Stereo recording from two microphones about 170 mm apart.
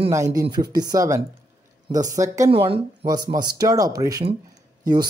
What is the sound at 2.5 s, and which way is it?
Speech, 35° right (ahead or behind).